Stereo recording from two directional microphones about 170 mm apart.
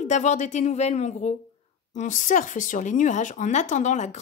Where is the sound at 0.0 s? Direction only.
45° left (ahead or behind).